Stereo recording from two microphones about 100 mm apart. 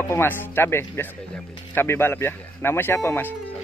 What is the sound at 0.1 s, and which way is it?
Speech, 25° left (ahead or behind).